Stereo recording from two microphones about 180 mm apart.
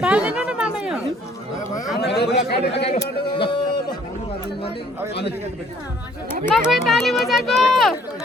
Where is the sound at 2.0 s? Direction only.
65° left (ahead or behind).